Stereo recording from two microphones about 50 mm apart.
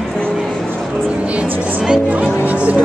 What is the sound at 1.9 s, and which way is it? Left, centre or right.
Music, right.